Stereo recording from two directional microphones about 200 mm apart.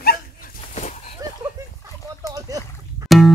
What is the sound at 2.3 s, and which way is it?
Splash, 15° right (ahead or behind).